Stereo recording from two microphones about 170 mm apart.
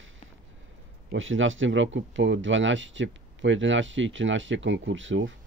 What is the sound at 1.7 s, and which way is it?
Speech, 90° right.